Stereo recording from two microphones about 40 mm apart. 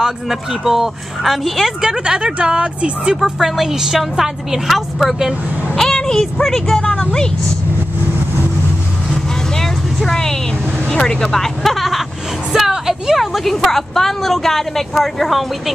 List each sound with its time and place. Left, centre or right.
0.0 s a woman's voice: centre
1.8 s a woman's voice: centre
3.3 s a woman's voice: centre
5.8 s a sound: centre
6.4 s speech: centre
9.1 s vehicle: centre
11.1 s a woman's voice: centre
12.5 s vehicle: centre
13.2 s a woman's voice: centre